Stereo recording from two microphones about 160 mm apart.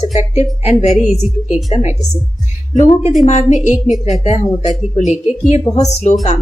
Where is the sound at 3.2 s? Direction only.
45° left (ahead or behind).